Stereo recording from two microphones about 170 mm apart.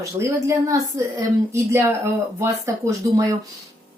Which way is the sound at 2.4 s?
15° right (ahead or behind).